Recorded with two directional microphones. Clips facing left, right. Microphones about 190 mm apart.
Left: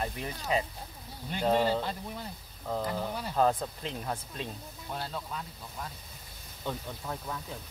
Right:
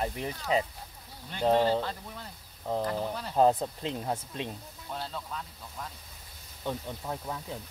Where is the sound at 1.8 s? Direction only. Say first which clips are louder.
Even; 15° left (ahead or behind).